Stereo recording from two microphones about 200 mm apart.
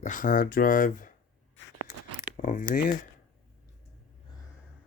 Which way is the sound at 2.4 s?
40° left (ahead or behind).